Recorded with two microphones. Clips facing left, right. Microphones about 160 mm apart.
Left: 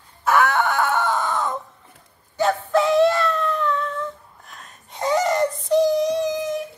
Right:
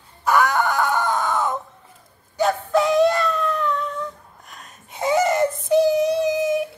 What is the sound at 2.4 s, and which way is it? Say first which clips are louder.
Music: even; centre (ahead or behind).